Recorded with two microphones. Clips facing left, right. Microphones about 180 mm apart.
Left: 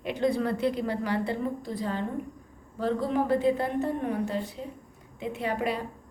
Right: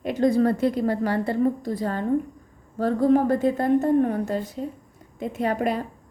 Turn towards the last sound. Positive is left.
turn(degrees=-45)  # may be behind; listen again after turning